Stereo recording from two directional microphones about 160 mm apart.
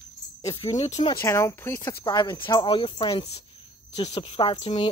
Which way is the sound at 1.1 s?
15° left (ahead or behind).